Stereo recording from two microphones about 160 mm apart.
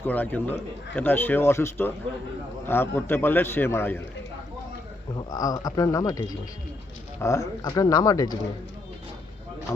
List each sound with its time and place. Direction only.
0.0 s speech: 10° left (ahead or behind)
5.1 s speech: 25° left (ahead or behind)